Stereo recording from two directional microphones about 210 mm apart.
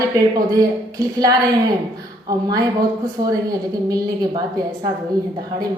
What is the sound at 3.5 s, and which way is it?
Speech, 20° right (ahead or behind).